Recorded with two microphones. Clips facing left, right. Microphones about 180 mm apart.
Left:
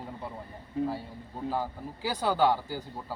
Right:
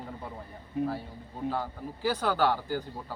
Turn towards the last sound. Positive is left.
turn(degrees=10)  # may be behind; listen again after turning